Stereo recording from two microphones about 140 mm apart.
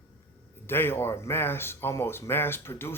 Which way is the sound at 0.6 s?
15° left (ahead or behind).